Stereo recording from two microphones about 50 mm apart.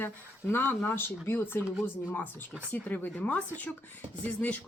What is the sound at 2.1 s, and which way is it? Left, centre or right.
Speech, left.